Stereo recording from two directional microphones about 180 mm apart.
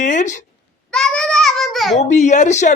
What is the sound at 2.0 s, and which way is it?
Speech, 40° left (ahead or behind).